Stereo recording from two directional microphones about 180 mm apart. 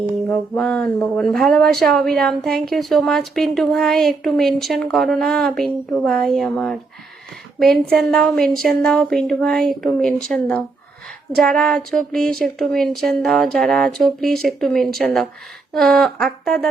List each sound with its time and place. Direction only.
0.5 s speech: 5° left (ahead or behind)